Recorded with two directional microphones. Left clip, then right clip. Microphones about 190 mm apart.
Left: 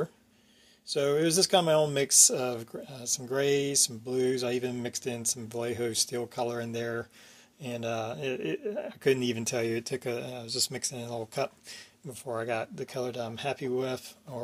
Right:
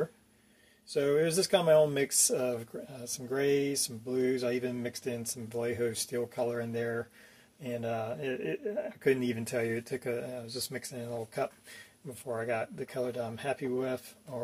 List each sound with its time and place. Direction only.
0.9 s speech: 20° left (ahead or behind)